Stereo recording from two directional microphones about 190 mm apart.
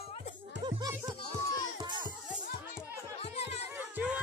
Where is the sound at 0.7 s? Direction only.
20° right (ahead or behind).